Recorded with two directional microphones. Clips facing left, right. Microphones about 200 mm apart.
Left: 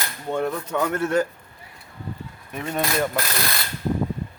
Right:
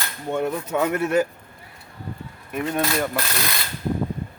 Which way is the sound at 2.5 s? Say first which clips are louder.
Right 2 dB; 5° right (ahead or behind).